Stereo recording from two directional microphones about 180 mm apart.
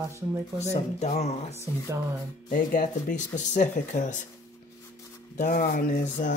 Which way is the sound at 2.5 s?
50° left (ahead or behind).